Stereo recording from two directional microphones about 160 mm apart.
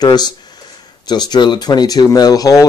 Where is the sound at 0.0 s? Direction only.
25° left (ahead or behind).